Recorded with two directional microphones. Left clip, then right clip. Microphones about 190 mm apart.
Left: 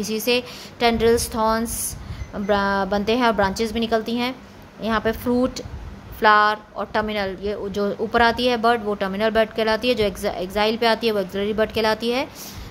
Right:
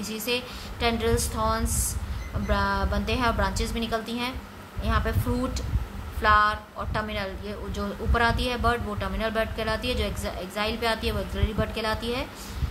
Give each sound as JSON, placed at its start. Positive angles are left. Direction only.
{"t": 0.0, "sound": "a woman's voice", "side_deg": 35}